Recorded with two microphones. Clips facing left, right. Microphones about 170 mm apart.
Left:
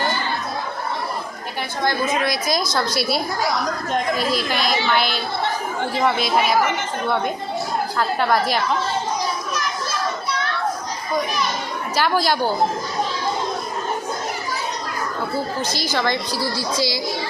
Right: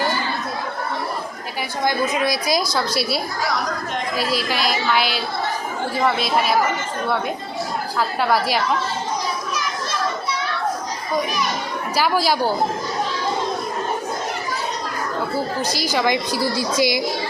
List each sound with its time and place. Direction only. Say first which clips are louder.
1.8 s a woman's voice: right 1 dB; 10° right (ahead or behind)
7.9 s a woman's voice: even; 5° right (ahead or behind)
11.9 s speech: even; 5° right (ahead or behind)
16.0 s a woman's voice: right 3 dB; 15° right (ahead or behind)